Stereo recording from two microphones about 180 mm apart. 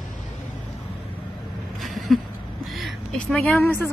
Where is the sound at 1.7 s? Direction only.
Centre (ahead or behind).